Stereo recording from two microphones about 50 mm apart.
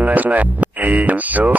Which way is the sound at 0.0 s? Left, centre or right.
Right.